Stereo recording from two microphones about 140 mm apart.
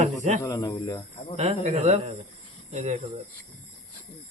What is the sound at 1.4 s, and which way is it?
Speech, 50° right (ahead or behind).